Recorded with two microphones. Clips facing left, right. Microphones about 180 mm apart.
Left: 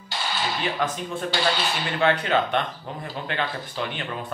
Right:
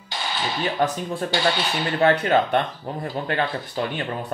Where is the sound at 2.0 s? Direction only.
40° right (ahead or behind).